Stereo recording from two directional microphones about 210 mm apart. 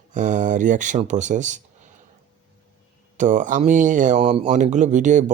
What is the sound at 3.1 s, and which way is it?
Speech, 35° right (ahead or behind).